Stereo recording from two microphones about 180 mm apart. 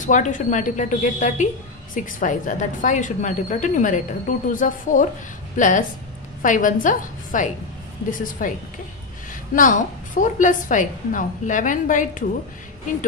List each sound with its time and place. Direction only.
0.0 s a woman's voice: 45° left (ahead or behind)